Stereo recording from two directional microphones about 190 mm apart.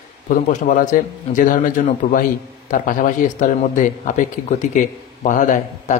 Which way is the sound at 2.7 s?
45° left (ahead or behind).